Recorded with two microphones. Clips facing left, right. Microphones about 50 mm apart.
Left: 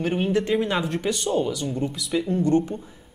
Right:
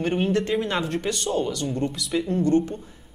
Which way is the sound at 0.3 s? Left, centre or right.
Centre.